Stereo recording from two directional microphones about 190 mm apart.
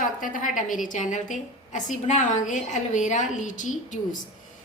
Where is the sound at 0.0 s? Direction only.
45° left (ahead or behind).